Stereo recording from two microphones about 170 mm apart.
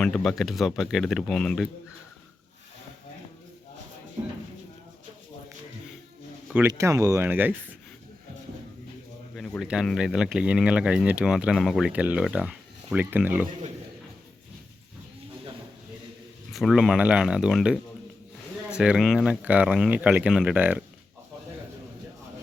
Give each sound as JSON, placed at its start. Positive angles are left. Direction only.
{"t": 0.0, "sound": "speech", "side_deg": 5}
{"t": 6.5, "sound": "speech", "side_deg": -15}
{"t": 9.3, "sound": "speech", "side_deg": 0}
{"t": 16.5, "sound": "speech", "side_deg": 0}